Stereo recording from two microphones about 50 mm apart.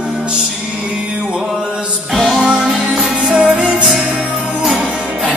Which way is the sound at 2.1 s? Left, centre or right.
Centre.